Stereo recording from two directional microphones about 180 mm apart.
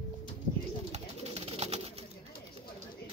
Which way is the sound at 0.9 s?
35° right (ahead or behind).